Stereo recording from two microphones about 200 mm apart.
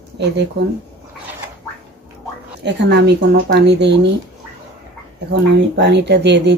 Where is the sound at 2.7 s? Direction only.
60° right (ahead or behind).